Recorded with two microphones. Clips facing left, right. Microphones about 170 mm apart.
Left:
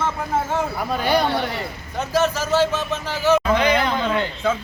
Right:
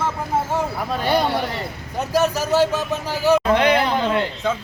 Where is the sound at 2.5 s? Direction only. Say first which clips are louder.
Right 2 dB; 15° right (ahead or behind).